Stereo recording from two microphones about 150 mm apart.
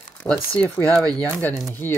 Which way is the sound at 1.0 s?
10° left (ahead or behind).